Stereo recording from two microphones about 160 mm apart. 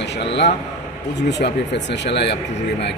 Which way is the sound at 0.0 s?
90° left.